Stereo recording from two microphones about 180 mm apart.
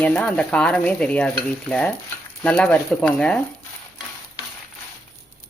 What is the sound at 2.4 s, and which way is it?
Stir, 10° left (ahead or behind).